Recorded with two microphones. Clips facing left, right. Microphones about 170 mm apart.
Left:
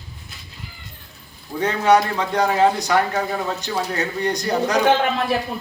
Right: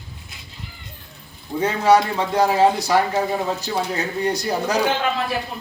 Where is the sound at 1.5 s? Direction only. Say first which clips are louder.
Even; 5° right (ahead or behind).